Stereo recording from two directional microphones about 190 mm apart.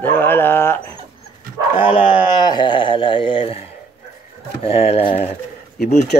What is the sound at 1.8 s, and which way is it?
Speech, 25° left (ahead or behind).